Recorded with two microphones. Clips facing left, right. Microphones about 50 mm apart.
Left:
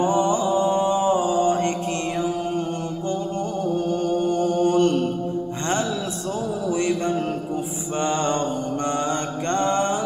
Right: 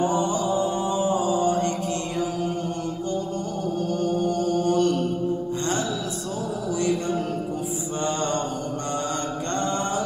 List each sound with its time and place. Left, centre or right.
0.0 s mantra: left
3.9 s mantra: left
6.7 s a sound: left
8.0 s mantra: left
9.5 s mantra: left